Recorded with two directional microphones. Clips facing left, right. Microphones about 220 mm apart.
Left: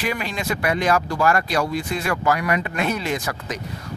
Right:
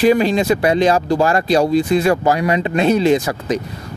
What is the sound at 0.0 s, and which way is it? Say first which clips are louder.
Speech: right 13 dB; 30° right (ahead or behind).